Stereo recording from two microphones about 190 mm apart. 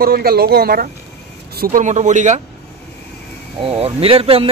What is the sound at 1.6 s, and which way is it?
Speech, 40° right (ahead or behind).